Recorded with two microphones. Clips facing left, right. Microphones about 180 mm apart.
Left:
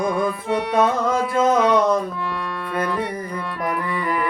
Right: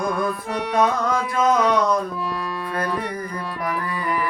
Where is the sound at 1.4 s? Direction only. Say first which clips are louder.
Left 2 dB; 25° left (ahead or behind).